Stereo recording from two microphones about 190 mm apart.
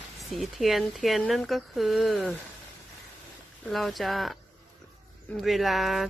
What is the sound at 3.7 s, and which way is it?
Speech, centre (ahead or behind).